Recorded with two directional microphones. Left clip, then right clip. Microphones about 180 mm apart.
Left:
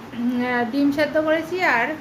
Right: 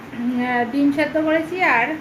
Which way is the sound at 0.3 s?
10° left (ahead or behind).